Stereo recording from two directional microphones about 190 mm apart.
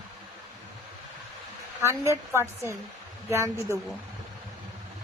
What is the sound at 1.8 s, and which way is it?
Speech, 15° right (ahead or behind).